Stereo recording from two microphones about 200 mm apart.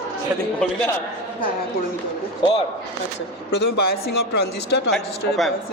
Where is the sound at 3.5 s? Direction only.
55° left (ahead or behind).